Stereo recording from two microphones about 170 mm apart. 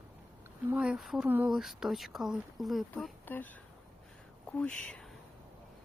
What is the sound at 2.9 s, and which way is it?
Speech, 10° left (ahead or behind).